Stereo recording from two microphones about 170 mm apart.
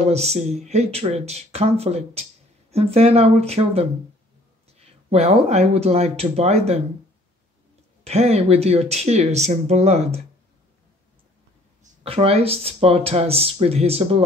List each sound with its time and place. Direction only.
0.0 s speech: 40° right (ahead or behind)
5.1 s speech: 40° right (ahead or behind)
8.0 s speech: 40° right (ahead or behind)
12.0 s speech: 35° right (ahead or behind)